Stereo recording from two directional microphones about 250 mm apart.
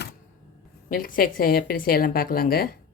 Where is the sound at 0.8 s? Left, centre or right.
Left.